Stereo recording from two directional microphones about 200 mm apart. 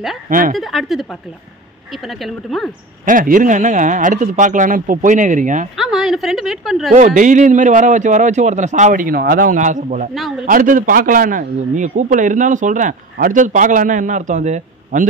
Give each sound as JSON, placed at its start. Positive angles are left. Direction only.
{"t": 0.3, "sound": "speech", "side_deg": -45}
{"t": 0.6, "sound": "a woman's voice", "side_deg": 0}
{"t": 3.1, "sound": "a man's voice", "side_deg": -40}
{"t": 5.8, "sound": "a woman's voice", "side_deg": 0}
{"t": 7.2, "sound": "a man's voice", "side_deg": -40}